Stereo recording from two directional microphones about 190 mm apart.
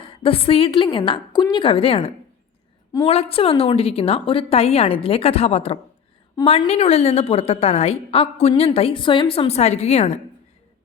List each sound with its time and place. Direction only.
0.0 s a woman's voice: 30° left (ahead or behind)